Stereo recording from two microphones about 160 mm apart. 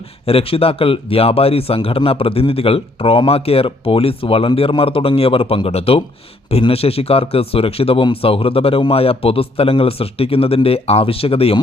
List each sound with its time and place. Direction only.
0.3 s speech: 35° left (ahead or behind)